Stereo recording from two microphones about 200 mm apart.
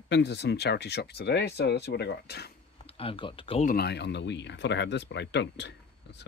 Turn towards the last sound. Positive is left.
turn(degrees=60)  # may be behind; listen again after turning